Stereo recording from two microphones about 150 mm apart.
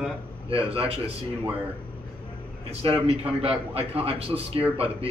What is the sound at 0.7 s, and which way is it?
Speech, 40° right (ahead or behind).